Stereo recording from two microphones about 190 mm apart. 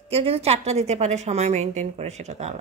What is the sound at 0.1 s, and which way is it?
A woman's voice, 30° right (ahead or behind).